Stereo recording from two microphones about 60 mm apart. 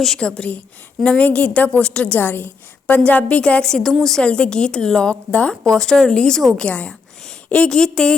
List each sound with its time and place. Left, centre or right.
0.0 s a woman's voice: centre
2.1 s a woman's voice: left; by 5.1 s centre
5.3 s a woman's voice: left
5.6 s a woman's voice: centre